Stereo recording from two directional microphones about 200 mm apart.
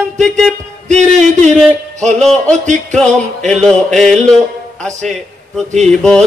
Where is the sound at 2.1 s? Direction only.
Centre (ahead or behind).